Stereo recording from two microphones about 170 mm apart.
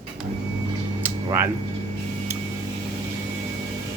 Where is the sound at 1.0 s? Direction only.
10° right (ahead or behind).